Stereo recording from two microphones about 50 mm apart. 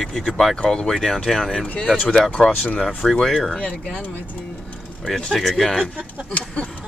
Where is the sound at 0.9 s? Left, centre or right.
Centre.